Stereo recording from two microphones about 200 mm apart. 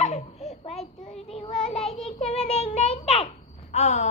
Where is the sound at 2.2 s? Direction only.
30° left (ahead or behind).